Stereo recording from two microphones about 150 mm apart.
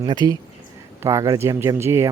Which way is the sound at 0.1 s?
30° right (ahead or behind).